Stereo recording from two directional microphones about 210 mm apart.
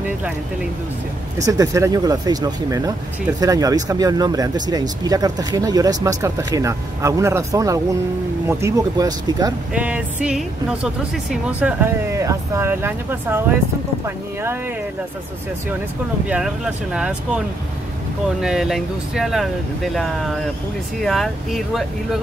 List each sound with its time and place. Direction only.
1.4 s speech: 15° right (ahead or behind)
9.8 s speech: 5° right (ahead or behind)
16.3 s speech: 5° right (ahead or behind)
18.4 s speech: centre (ahead or behind)